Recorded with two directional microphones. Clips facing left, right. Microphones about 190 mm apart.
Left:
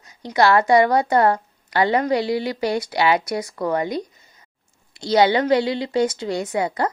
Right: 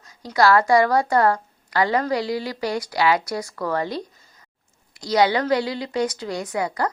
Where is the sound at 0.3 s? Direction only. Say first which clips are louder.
Left 1 dB; 20° left (ahead or behind).